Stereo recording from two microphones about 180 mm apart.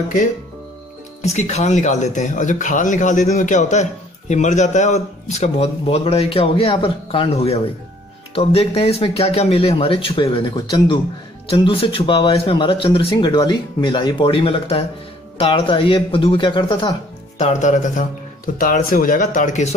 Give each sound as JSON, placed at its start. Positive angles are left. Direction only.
{"t": 1.2, "sound": "speech", "side_deg": 40}
{"t": 17.4, "sound": "speech", "side_deg": 45}